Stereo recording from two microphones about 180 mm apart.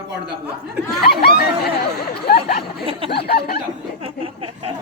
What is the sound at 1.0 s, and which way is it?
Speech, 60° left (ahead or behind).